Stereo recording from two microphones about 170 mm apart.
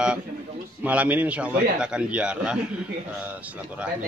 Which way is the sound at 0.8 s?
10° right (ahead or behind).